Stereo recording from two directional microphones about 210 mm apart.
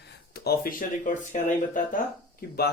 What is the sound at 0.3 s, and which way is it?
Speech, 45° left (ahead or behind).